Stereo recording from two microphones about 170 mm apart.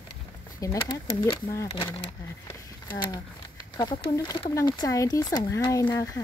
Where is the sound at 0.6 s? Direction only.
20° left (ahead or behind).